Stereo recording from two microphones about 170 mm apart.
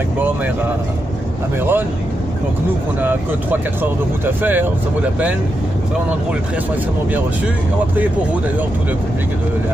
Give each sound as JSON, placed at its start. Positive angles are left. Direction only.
{"t": 1.6, "sound": "speech", "side_deg": -10}
{"t": 4.4, "sound": "speech", "side_deg": -10}